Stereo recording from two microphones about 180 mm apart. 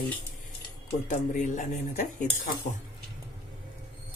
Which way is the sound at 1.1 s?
45° left (ahead or behind).